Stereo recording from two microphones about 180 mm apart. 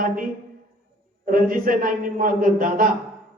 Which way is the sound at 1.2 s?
50° right (ahead or behind).